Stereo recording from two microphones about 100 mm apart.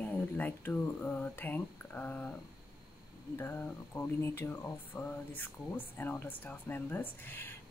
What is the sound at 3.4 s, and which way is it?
Speech, 20° left (ahead or behind).